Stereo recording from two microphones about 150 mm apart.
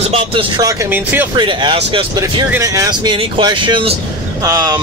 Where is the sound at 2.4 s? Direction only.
20° right (ahead or behind); by 3.9 s 35° right (ahead or behind).